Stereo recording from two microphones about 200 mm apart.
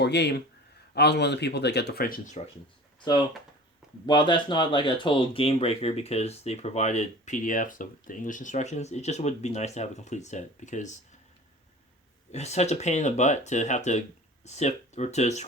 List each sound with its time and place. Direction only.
0.0 s speech: 55° left (ahead or behind); by 2.4 s 40° left (ahead or behind)
3.0 s speech: 20° left (ahead or behind); by 10.9 s 35° left (ahead or behind)
12.3 s speech: 35° left (ahead or behind)